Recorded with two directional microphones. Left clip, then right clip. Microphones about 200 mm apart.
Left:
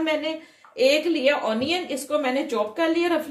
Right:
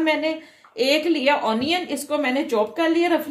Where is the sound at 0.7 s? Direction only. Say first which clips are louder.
Even; 55° right (ahead or behind).